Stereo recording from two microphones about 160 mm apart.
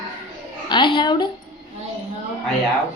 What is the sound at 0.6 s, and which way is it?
Speech, 30° left (ahead or behind).